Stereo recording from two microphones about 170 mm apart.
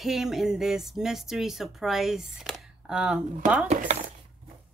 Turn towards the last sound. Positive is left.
turn(degrees=-45)  # may be behind; listen again after turning